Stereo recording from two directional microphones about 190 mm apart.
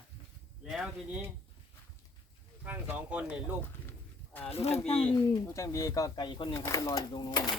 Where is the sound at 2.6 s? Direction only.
10° right (ahead or behind).